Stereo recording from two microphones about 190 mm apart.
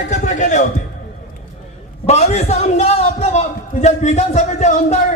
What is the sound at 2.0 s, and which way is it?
A man's voice, 35° left (ahead or behind).